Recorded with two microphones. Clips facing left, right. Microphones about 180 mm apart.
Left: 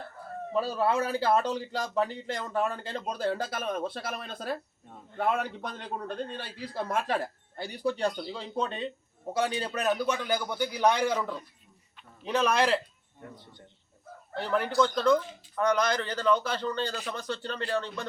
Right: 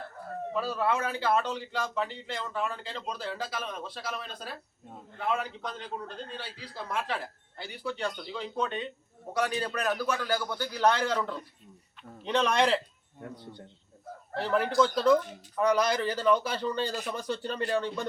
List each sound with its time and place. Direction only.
0.5 s a man's voice: 30° left (ahead or behind); by 12.8 s 5° left (ahead or behind)
14.3 s a man's voice: centre (ahead or behind)